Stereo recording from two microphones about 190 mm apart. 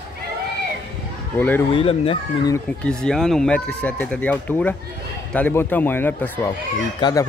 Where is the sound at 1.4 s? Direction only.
10° left (ahead or behind).